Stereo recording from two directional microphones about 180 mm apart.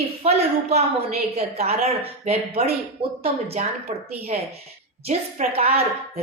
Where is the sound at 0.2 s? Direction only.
35° right (ahead or behind).